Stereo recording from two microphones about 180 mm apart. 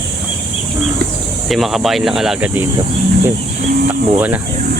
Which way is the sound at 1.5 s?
Centre (ahead or behind).